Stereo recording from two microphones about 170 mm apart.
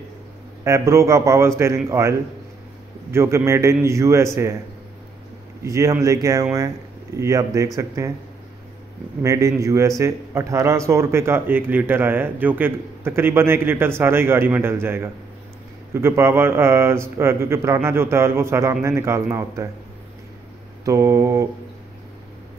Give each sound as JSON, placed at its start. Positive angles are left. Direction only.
{"t": 0.7, "sound": "a man's voice", "side_deg": -15}
{"t": 5.6, "sound": "speech", "side_deg": -20}
{"t": 9.2, "sound": "a man's voice", "side_deg": -20}
{"t": 20.8, "sound": "a man's voice", "side_deg": -15}